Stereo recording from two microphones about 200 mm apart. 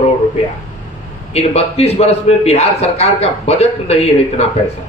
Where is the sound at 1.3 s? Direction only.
30° left (ahead or behind).